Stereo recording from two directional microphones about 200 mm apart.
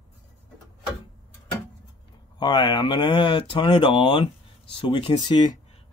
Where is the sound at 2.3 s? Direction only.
25° left (ahead or behind).